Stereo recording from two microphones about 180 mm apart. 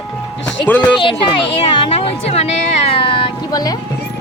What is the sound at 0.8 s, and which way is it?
Speech, 25° left (ahead or behind).